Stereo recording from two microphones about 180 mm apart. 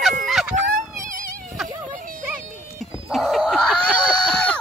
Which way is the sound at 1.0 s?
50° right (ahead or behind).